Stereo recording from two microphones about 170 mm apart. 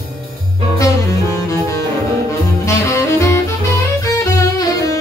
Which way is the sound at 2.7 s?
15° left (ahead or behind).